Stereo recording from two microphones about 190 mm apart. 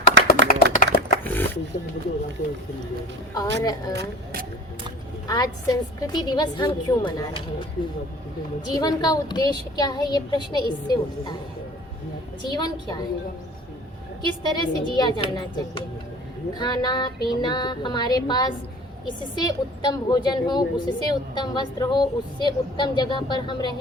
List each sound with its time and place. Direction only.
0.3 s tap: 45° left (ahead or behind)
1.2 s a sound: 10° left (ahead or behind)
1.7 s speech: 45° left (ahead or behind)
3.3 s a woman's voice: 20° left (ahead or behind)
3.9 s speech: 55° right (ahead or behind)
5.3 s a woman's voice: 20° left (ahead or behind)
8.7 s a woman's voice: 20° left (ahead or behind)
12.5 s a woman's voice: 20° left (ahead or behind)
14.4 s a woman's voice: 20° left (ahead or behind)
16.6 s a woman's voice: 25° left (ahead or behind)